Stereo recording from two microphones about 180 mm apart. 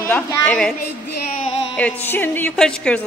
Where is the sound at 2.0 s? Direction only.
10° left (ahead or behind).